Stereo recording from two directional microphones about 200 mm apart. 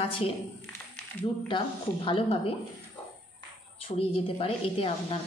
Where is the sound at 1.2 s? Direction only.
25° left (ahead or behind).